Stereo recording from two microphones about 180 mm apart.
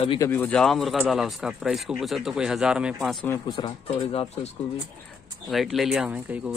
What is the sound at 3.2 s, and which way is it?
Speech, 15° left (ahead or behind).